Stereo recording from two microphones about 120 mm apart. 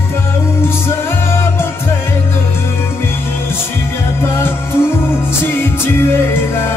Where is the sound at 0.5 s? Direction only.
20° left (ahead or behind).